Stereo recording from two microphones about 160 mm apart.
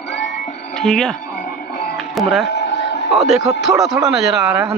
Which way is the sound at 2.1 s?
Centre (ahead or behind).